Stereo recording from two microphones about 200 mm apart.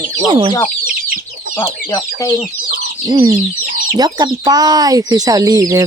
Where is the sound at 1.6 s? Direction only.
15° left (ahead or behind).